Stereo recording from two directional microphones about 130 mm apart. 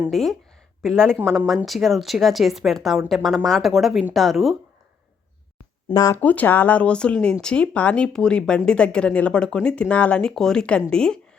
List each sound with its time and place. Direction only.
0.1 s a woman's voice: centre (ahead or behind)
5.9 s speech: 25° left (ahead or behind)
6.1 s speech: 10° left (ahead or behind)